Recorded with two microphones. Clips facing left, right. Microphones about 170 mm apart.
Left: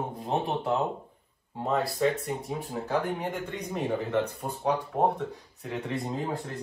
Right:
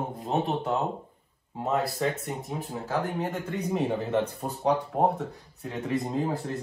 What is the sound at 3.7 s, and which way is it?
Speech, 15° right (ahead or behind).